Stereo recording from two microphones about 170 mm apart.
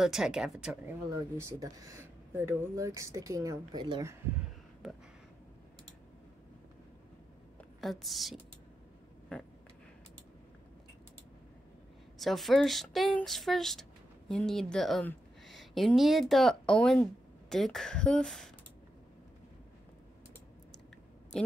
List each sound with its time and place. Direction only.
0.0 s a woman's voice: 5° right (ahead or behind)
1.3 s speech: 20° right (ahead or behind)
7.8 s a woman's voice: centre (ahead or behind)
9.3 s a sound: 10° left (ahead or behind)
12.2 s a woman's voice: centre (ahead or behind)